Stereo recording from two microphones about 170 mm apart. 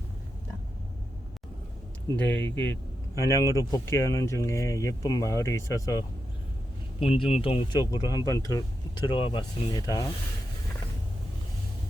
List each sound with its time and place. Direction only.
2.1 s speech: 10° left (ahead or behind)
7.0 s speech: 35° left (ahead or behind)